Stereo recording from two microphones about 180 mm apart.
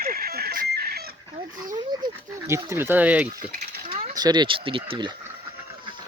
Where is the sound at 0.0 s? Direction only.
55° right (ahead or behind).